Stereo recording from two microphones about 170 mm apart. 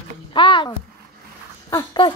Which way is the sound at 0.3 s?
30° left (ahead or behind).